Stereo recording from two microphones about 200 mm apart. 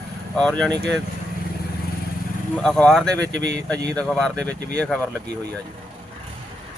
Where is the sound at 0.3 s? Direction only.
5° left (ahead or behind).